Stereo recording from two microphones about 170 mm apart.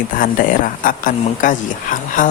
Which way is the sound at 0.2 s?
55° left (ahead or behind).